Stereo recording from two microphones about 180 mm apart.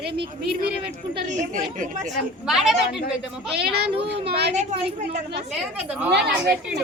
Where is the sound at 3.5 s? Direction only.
65° right (ahead or behind).